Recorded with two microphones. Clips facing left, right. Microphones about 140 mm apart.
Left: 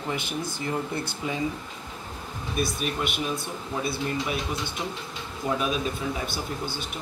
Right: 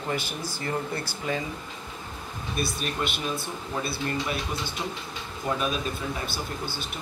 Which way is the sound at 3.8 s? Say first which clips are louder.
Left 1 dB; 15° left (ahead or behind).